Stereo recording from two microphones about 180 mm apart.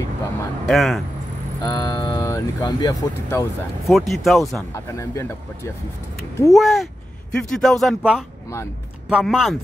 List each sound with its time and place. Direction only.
0.7 s speech: centre (ahead or behind)
1.6 s speech: 20° left (ahead or behind)
3.8 s speech: centre (ahead or behind)
4.7 s speech: 15° left (ahead or behind)
6.5 s speech: centre (ahead or behind)